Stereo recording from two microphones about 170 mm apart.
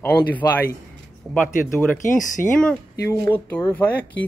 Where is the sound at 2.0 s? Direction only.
50° left (ahead or behind).